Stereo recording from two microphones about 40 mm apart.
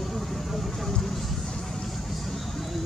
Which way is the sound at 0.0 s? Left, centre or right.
Centre.